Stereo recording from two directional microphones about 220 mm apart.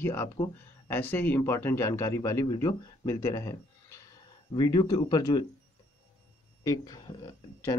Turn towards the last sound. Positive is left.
turn(degrees=20)  # may be behind; listen again after turning